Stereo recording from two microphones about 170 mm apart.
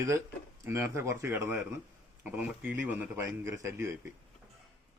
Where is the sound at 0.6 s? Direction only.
15° right (ahead or behind).